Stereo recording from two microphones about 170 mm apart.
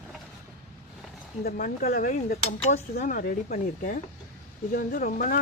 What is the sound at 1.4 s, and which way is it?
Speech, 60° left (ahead or behind).